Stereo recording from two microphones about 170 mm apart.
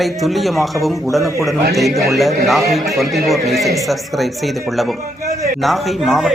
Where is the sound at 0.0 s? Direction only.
Centre (ahead or behind).